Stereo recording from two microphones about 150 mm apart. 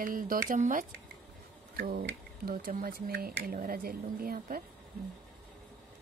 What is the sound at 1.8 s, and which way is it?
Speech, 85° right.